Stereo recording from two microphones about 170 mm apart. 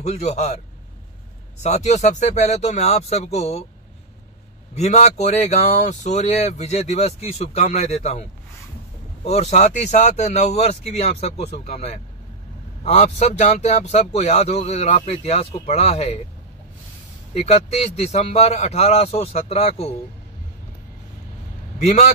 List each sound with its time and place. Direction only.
0.0 s speech: 40° left (ahead or behind)
1.6 s speech: 40° left (ahead or behind)
4.7 s speech: 40° left (ahead or behind)
17.3 s speech: 40° left (ahead or behind)
21.7 s speech: 40° left (ahead or behind)